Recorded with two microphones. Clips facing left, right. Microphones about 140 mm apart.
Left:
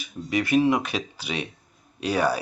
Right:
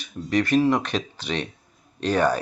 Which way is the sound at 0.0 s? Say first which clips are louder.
Right 3 dB; 10° left (ahead or behind).